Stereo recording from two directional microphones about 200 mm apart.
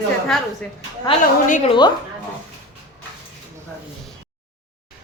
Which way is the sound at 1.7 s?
20° left (ahead or behind).